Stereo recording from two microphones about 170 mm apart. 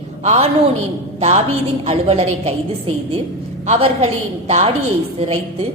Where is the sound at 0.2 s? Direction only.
40° right (ahead or behind).